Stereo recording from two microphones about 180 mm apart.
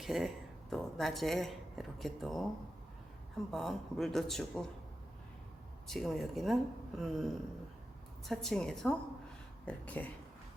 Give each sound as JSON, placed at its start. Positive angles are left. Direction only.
{"t": 0.0, "sound": "speech", "side_deg": 0}
{"t": 3.5, "sound": "speech", "side_deg": 0}
{"t": 5.9, "sound": "speech", "side_deg": 0}
{"t": 8.3, "sound": "speech", "side_deg": 0}